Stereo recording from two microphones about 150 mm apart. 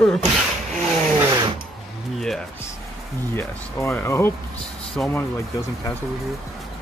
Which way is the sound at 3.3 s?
15° left (ahead or behind).